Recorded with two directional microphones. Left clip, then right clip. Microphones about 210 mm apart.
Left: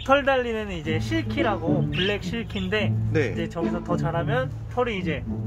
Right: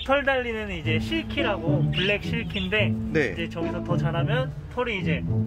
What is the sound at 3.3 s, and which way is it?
Speech, 25° left (ahead or behind).